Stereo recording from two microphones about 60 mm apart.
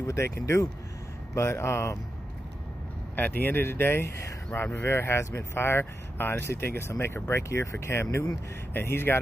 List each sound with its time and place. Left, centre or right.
0.0 s speech: left
3.2 s speech: left
7.4 s speech: left
8.7 s speech: left